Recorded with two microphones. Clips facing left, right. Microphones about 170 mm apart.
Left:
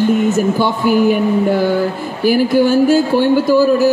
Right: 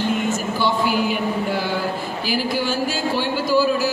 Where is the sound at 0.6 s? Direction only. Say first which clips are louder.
Left 5 dB; 50° left (ahead or behind).